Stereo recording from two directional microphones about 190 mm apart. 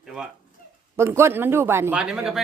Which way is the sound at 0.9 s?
15° right (ahead or behind).